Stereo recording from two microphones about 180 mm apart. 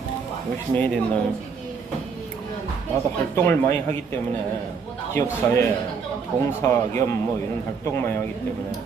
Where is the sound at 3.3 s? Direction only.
15° left (ahead or behind).